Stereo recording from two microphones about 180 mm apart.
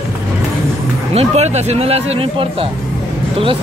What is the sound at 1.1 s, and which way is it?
Speech, 35° right (ahead or behind).